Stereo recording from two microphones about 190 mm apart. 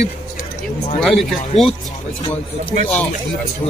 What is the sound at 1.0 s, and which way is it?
Speech, centre (ahead or behind).